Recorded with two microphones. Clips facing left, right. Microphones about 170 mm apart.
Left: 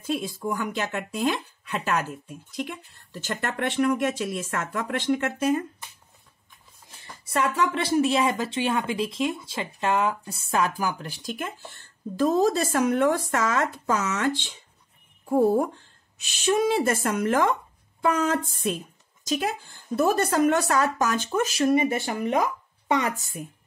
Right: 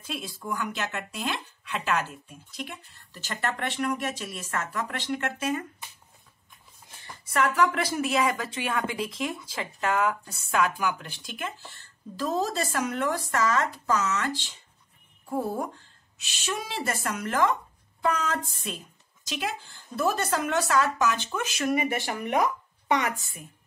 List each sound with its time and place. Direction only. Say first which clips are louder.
0.0 s speech: left 8 dB; 45° left (ahead or behind)
7.2 s a woman's voice: even; 25° left (ahead or behind); by 14.3 s 55° left (ahead or behind)
15.3 s speech: left 9 dB; 50° left (ahead or behind); by 22.4 s 25° left (ahead or behind)